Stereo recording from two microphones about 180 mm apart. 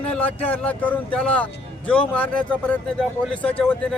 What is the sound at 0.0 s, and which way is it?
Speech, 5° left (ahead or behind).